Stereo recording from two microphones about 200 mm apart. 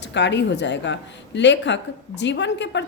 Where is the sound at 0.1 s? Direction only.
60° left (ahead or behind).